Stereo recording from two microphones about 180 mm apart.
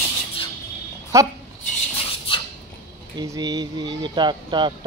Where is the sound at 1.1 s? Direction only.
15° right (ahead or behind).